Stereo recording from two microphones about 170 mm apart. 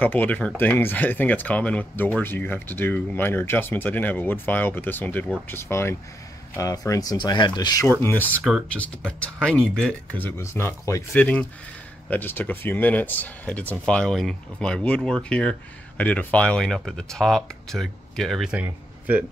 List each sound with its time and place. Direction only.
0.0 s speech: 10° left (ahead or behind)
8.0 s speech: 10° left (ahead or behind); by 19.2 s 10° right (ahead or behind)